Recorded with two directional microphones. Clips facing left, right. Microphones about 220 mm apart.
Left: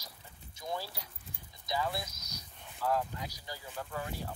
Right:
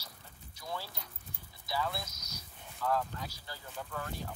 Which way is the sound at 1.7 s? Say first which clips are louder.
Left 1 dB; 15° left (ahead or behind).